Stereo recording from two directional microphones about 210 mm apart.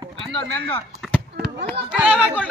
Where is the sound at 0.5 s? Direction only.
10° left (ahead or behind).